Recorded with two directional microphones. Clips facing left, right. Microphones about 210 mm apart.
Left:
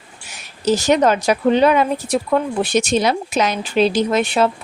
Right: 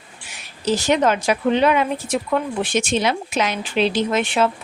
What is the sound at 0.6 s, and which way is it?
A woman's voice, 40° left (ahead or behind).